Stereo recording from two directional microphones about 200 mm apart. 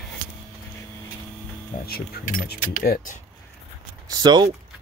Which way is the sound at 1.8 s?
50° left (ahead or behind).